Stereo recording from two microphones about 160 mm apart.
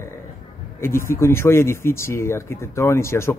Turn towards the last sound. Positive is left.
turn(degrees=15)  # may be behind; listen again after turning